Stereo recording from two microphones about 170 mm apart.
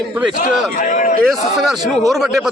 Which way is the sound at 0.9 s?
45° left (ahead or behind).